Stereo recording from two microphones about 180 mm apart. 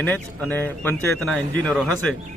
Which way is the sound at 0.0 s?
10° left (ahead or behind).